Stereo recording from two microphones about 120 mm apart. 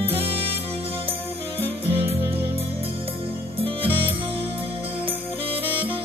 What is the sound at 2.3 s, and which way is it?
Music, 55° right (ahead or behind).